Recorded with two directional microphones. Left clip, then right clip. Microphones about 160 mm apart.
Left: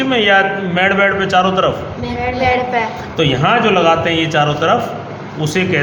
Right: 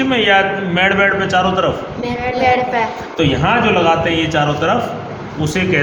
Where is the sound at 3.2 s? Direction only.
35° left (ahead or behind).